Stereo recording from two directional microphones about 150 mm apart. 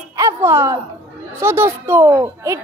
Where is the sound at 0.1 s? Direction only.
20° right (ahead or behind).